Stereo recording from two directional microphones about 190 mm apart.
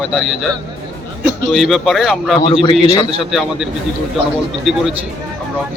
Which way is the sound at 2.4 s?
25° left (ahead or behind).